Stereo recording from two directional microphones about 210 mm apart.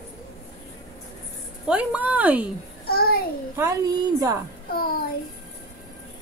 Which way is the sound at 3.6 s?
15° right (ahead or behind).